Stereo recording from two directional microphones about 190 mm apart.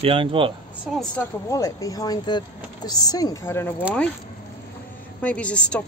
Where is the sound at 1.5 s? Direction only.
15° left (ahead or behind).